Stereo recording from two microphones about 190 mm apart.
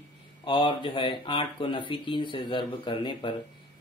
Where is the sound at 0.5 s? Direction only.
25° left (ahead or behind).